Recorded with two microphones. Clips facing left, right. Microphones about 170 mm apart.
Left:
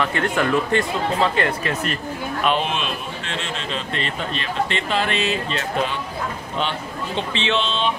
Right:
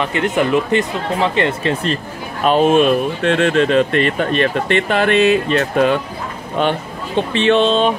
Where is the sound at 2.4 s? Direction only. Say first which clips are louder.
Right 11 dB; 40° right (ahead or behind).